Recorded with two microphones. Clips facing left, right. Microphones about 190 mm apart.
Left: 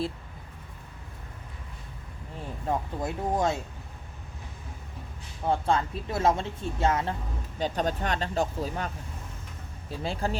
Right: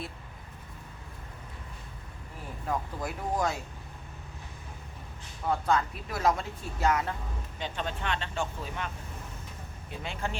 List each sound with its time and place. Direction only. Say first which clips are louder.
2.6 s speech: left 3 dB; 25° left (ahead or behind)
5.5 s speech: left 2 dB; 30° left (ahead or behind)
7.6 s speech: left 7 dB; 40° left (ahead or behind)
9.9 s speech: left 5 dB; 35° left (ahead or behind)